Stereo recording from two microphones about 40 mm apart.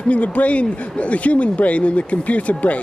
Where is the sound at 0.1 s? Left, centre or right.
Left.